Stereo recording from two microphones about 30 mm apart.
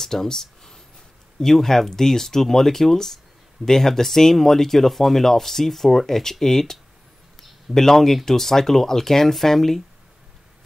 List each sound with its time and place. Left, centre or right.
0.0 s speech: centre